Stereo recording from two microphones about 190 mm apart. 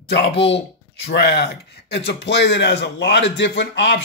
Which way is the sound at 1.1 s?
60° left (ahead or behind).